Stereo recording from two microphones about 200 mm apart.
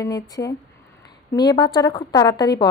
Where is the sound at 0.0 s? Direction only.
15° left (ahead or behind).